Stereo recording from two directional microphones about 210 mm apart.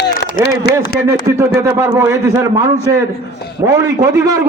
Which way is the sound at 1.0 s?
10° right (ahead or behind).